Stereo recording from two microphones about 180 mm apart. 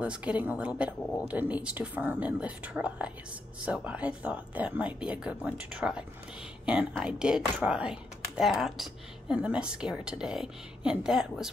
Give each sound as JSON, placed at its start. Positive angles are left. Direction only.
{"t": 0.0, "sound": "a woman's voice", "side_deg": -5}